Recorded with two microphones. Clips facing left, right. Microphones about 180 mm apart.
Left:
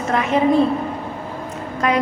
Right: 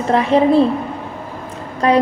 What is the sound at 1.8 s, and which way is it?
Speech, 30° right (ahead or behind).